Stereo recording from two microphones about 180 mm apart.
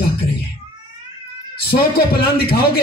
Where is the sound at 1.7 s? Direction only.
55° left (ahead or behind).